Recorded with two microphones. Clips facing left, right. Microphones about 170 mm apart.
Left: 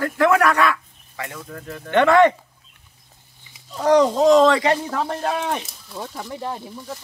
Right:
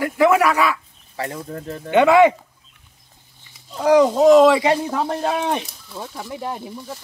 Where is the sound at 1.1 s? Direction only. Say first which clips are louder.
Right 5 dB; 35° right (ahead or behind).